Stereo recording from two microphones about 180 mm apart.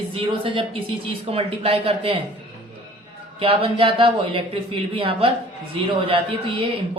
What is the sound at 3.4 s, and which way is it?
Speech, 30° right (ahead or behind).